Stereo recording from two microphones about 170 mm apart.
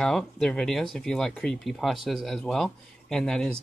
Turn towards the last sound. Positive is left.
turn(degrees=5)  # may be behind; listen again after turning